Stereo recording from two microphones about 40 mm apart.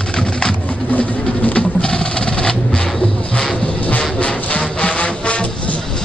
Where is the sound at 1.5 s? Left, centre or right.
Left.